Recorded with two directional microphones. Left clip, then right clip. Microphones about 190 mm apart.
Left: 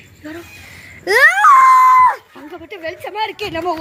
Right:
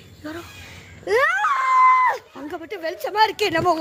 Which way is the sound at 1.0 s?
55° left (ahead or behind).